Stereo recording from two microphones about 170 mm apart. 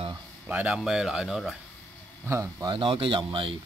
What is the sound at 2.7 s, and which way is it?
Speech, 30° right (ahead or behind).